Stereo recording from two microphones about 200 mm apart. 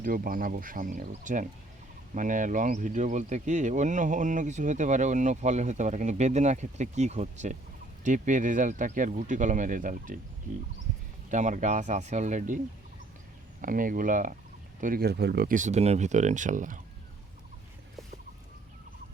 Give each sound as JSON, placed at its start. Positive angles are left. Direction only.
{"t": 0.0, "sound": "speech", "side_deg": -45}
{"t": 11.3, "sound": "speech", "side_deg": -40}
{"t": 13.6, "sound": "speech", "side_deg": -45}